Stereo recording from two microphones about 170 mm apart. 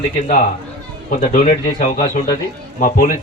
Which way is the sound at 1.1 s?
45° left (ahead or behind).